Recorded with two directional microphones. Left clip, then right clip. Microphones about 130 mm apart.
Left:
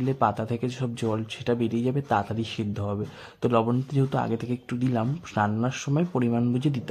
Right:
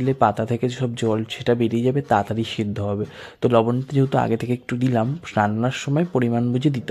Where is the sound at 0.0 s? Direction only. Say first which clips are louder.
Right 6 dB; 25° right (ahead or behind).